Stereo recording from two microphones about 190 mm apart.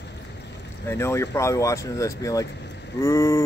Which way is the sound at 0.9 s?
15° left (ahead or behind).